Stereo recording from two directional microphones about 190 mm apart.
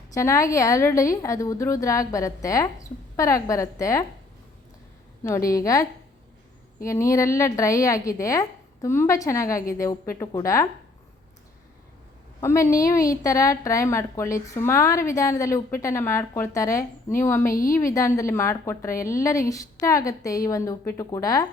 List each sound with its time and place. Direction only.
0.1 s a woman's voice: 15° left (ahead or behind)
5.5 s a woman's voice: 15° left (ahead or behind)
12.4 s a woman's voice: 15° left (ahead or behind)
17.5 s a woman's voice: 45° left (ahead or behind)
17.7 s a woman's voice: 15° left (ahead or behind)